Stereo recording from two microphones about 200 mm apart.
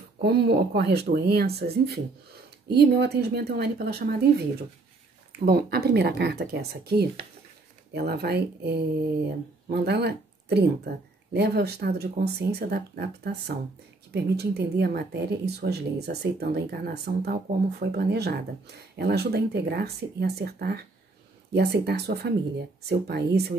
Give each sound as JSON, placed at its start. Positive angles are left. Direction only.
{"t": 0.2, "sound": "a woman's voice", "side_deg": -55}